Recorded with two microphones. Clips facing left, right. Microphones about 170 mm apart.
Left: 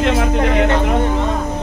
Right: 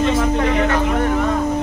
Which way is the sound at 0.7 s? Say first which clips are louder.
Left 1 dB; 25° left (ahead or behind).